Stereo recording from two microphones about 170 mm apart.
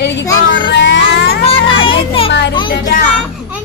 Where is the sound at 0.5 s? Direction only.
90° left.